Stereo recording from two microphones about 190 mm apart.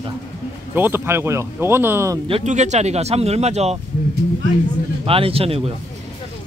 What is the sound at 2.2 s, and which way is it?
Speech, 35° right (ahead or behind).